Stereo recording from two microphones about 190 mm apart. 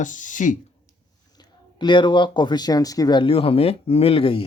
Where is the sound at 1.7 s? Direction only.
25° left (ahead or behind).